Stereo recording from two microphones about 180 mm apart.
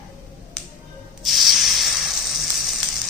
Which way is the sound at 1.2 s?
Centre (ahead or behind).